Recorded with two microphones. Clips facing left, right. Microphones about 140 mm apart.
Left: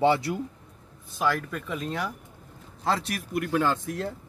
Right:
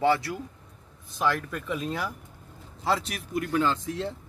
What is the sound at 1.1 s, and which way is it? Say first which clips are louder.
Speech: even; centre (ahead or behind).